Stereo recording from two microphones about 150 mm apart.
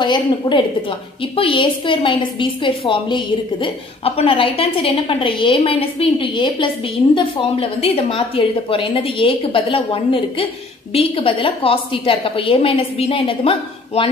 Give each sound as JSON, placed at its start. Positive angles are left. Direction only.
{"t": 0.0, "sound": "a woman's voice", "side_deg": 30}